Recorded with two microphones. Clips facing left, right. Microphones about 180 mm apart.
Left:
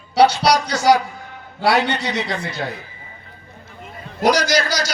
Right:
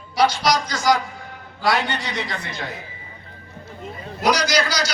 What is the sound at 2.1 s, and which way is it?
Speech, 40° left (ahead or behind).